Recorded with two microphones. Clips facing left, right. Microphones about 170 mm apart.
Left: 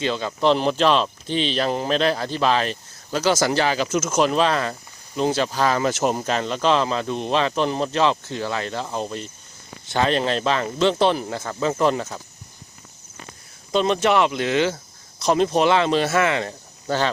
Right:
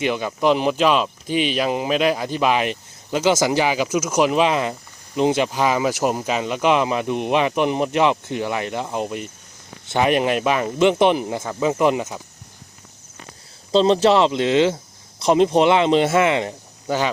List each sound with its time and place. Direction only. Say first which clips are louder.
0.0 s speech: right 1 dB; 15° right (ahead or behind)
13.7 s speech: right 4 dB; 30° right (ahead or behind); by 17.1 s 15° right (ahead or behind)